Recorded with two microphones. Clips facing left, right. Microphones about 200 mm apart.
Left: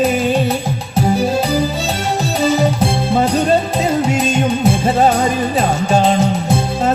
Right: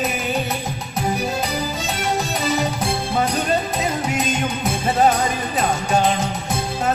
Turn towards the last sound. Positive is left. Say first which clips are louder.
# left 6 dB
turn(degrees=25)  # may be behind; listen again after turning